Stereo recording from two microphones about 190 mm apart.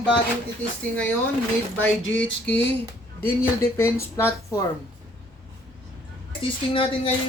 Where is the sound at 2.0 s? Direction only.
80° left.